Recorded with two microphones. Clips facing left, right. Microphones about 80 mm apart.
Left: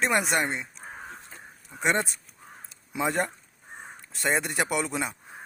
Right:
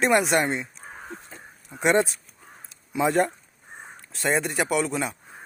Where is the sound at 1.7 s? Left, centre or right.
Centre.